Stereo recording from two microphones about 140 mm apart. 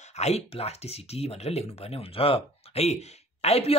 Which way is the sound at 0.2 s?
50° left (ahead or behind).